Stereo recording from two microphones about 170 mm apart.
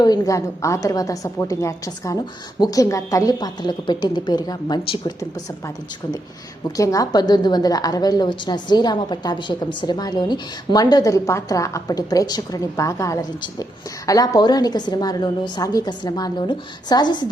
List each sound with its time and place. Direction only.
0.0 s a woman's voice: 20° left (ahead or behind)
6.7 s a woman's voice: 20° left (ahead or behind)